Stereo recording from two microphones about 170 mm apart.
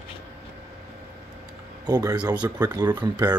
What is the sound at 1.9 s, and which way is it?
Speech, 25° right (ahead or behind).